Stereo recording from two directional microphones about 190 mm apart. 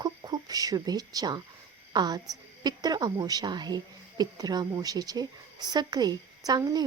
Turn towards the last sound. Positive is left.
turn(degrees=-20)  # may be behind; listen again after turning